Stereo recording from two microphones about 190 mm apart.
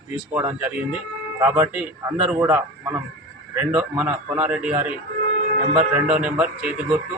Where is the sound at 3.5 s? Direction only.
10° right (ahead or behind).